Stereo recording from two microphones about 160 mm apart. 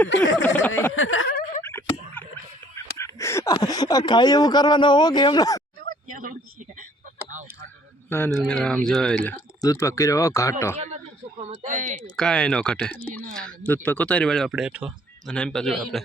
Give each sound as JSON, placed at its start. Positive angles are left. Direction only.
{"t": 0.0, "sound": "speech", "side_deg": 10}
{"t": 1.3, "sound": "a sound", "side_deg": 70}
{"t": 2.2, "sound": "a sound", "side_deg": 10}
{"t": 2.7, "sound": "speech", "side_deg": 15}
{"t": 6.1, "sound": "speech", "side_deg": -60}
{"t": 7.3, "sound": "a sound", "side_deg": -50}
{"t": 8.3, "sound": "speech", "side_deg": 5}
{"t": 9.6, "sound": "speech", "side_deg": 20}
{"t": 10.8, "sound": "speech", "side_deg": -45}
{"t": 12.1, "sound": "speech", "side_deg": 5}
{"t": 15.3, "sound": "speech", "side_deg": 5}